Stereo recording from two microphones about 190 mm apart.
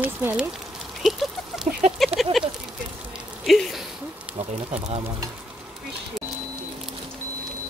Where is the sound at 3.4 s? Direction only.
Centre (ahead or behind).